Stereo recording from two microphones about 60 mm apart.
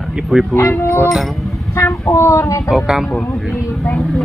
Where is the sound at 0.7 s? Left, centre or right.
Left.